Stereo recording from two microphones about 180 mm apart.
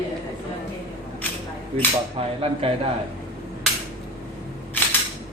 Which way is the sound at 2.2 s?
30° right (ahead or behind).